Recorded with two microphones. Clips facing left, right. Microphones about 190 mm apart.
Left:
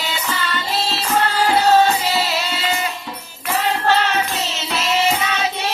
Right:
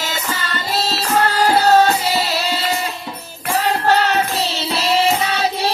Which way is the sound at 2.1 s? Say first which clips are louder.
Right 2 dB; 40° right (ahead or behind).